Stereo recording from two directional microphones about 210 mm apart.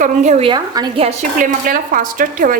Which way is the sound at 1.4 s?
40° right (ahead or behind).